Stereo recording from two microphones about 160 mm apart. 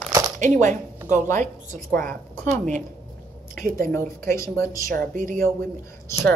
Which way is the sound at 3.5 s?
55° right (ahead or behind).